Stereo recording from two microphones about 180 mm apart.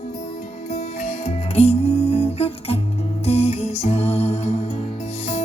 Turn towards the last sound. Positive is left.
turn(degrees=35)  # may be behind; listen again after turning